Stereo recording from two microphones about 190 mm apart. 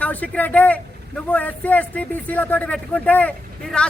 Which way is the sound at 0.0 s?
10° left (ahead or behind).